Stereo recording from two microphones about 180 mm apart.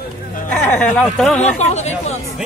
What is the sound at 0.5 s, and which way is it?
Speech, 5° left (ahead or behind).